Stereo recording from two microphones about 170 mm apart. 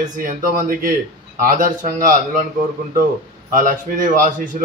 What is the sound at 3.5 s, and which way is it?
Speech, 55° right (ahead or behind).